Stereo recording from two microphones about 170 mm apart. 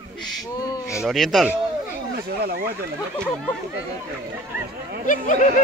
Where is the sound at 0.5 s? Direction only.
20° left (ahead or behind).